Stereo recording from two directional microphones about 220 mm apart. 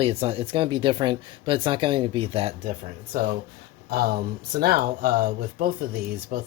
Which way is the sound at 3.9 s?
45° right (ahead or behind).